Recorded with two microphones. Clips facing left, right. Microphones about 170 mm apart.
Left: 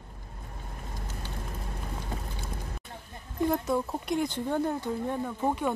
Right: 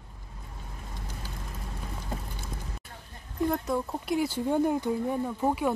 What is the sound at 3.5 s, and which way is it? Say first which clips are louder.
Speech: left 1 dB; centre (ahead or behind).